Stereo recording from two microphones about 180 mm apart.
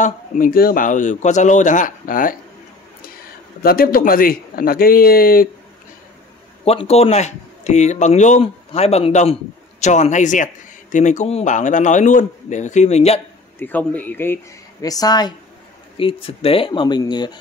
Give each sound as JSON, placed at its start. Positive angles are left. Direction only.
{"t": 0.0, "sound": "speech", "side_deg": 50}
{"t": 3.6, "sound": "speech", "side_deg": 55}
{"t": 6.6, "sound": "speech", "side_deg": 35}
{"t": 13.6, "sound": "speech", "side_deg": 10}